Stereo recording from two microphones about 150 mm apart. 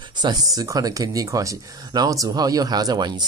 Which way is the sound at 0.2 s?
25° right (ahead or behind).